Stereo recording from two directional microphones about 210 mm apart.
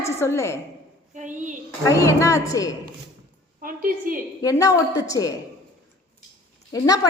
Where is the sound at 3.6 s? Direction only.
40° right (ahead or behind).